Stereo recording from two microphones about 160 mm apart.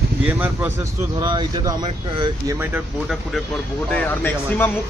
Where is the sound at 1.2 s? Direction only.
25° right (ahead or behind).